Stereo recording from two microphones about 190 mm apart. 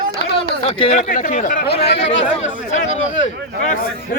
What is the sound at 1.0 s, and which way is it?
Speech, 45° left (ahead or behind).